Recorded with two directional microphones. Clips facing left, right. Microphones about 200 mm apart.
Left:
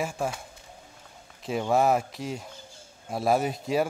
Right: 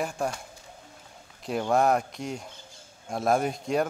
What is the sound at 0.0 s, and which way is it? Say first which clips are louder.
Speech: even; centre (ahead or behind).